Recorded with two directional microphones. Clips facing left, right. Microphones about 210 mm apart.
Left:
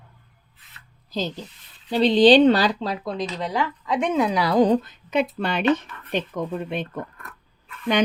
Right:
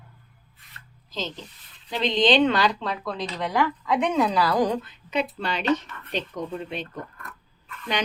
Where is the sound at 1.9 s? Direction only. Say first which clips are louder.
Left 7 dB; 35° left (ahead or behind).